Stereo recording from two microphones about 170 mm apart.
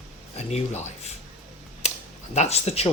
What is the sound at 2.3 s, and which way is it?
Speech, 40° left (ahead or behind).